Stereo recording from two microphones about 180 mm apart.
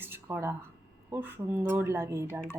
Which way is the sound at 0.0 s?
15° right (ahead or behind).